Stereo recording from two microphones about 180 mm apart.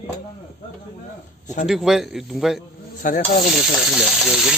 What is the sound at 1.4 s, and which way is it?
Speech, 40° left (ahead or behind).